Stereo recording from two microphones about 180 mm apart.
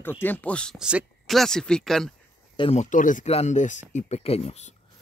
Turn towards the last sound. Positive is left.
turn(degrees=35)  # may be behind; listen again after turning